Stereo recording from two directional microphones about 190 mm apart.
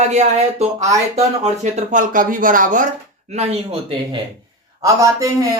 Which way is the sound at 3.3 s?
35° right (ahead or behind).